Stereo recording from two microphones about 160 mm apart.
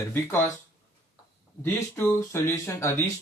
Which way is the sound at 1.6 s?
15° left (ahead or behind).